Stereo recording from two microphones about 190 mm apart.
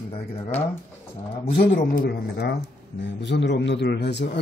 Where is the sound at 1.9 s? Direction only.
55° left (ahead or behind).